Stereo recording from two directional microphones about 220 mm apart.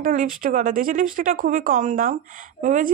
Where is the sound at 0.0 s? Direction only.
35° right (ahead or behind).